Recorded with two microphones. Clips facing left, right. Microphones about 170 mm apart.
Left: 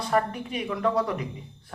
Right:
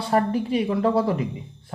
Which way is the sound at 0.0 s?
30° right (ahead or behind).